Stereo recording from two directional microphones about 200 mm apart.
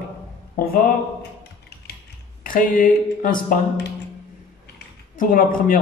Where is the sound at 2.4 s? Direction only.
45° left (ahead or behind).